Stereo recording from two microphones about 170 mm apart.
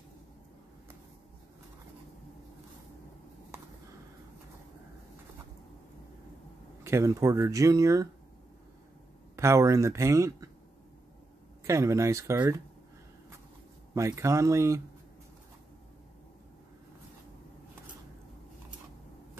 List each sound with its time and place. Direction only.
3.5 s a sound: 15° right (ahead or behind)
6.8 s speech: 15° right (ahead or behind)
9.4 s speech: 15° right (ahead or behind)
11.6 s speech: 20° right (ahead or behind)
13.9 s speech: 20° right (ahead or behind)